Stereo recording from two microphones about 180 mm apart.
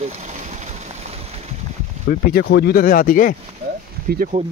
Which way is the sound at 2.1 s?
60° left (ahead or behind).